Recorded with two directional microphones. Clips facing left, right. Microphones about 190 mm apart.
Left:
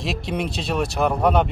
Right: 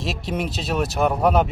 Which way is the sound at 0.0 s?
Centre (ahead or behind).